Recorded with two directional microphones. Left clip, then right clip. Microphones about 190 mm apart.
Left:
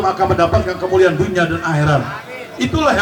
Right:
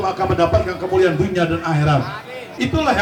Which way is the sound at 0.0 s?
30° right (ahead or behind).